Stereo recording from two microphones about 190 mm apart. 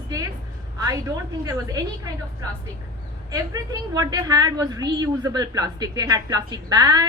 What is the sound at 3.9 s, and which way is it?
A woman's voice, 20° right (ahead or behind).